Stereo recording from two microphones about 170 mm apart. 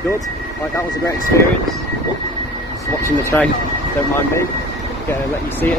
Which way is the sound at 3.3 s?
10° left (ahead or behind).